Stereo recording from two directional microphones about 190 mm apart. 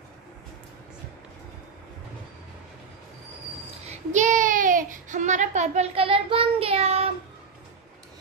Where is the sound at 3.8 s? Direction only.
35° right (ahead or behind).